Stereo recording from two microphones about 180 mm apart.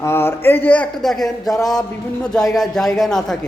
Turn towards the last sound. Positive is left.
turn(degrees=0)  # may be behind; listen again after turning